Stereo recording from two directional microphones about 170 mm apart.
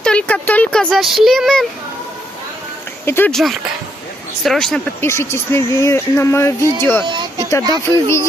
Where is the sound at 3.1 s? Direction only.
15° left (ahead or behind).